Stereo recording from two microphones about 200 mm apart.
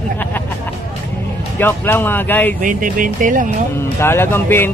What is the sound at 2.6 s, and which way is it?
Speech, 40° right (ahead or behind).